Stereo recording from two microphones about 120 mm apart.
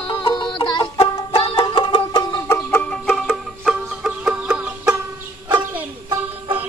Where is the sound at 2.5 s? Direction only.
15° left (ahead or behind).